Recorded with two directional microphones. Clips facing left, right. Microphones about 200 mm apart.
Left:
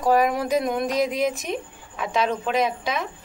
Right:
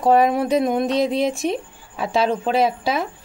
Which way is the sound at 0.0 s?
25° right (ahead or behind).